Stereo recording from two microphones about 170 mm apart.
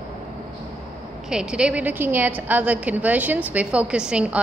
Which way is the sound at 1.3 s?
5° right (ahead or behind).